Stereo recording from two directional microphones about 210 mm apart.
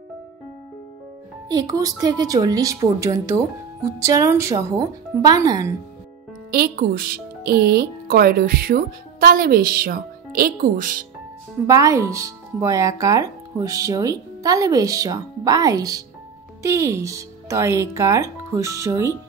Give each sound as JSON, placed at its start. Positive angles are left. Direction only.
{"t": 1.5, "sound": "speech", "side_deg": -15}
{"t": 6.5, "sound": "speech", "side_deg": -45}
{"t": 11.6, "sound": "speech", "side_deg": -15}